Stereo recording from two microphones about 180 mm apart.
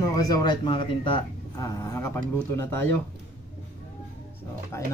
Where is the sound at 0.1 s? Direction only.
20° left (ahead or behind).